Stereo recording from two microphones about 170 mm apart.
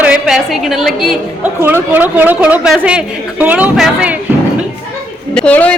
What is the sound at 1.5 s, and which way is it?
A woman's voice, 10° right (ahead or behind).